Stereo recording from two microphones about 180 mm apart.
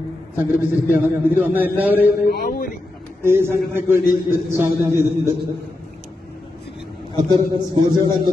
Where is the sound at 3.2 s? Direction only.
15° right (ahead or behind).